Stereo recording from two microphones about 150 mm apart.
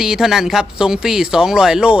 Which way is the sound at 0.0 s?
5° right (ahead or behind).